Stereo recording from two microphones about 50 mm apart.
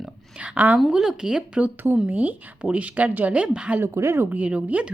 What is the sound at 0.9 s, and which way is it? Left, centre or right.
Speech, centre.